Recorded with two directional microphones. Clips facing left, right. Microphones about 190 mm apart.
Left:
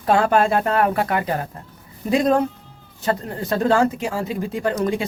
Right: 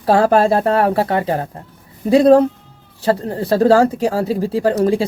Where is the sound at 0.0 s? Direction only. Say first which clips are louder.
Right 4 dB; 35° right (ahead or behind).